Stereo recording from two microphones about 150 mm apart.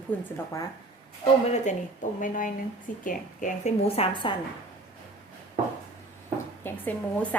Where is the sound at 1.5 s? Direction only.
50° left (ahead or behind).